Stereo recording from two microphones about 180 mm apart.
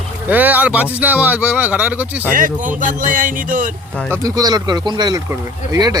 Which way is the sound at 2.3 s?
50° right (ahead or behind).